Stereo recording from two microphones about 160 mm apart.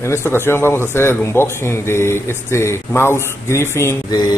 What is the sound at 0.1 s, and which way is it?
A man's voice, 15° left (ahead or behind).